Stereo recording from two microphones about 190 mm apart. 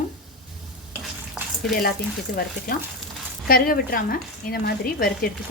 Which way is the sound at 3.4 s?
50° left (ahead or behind).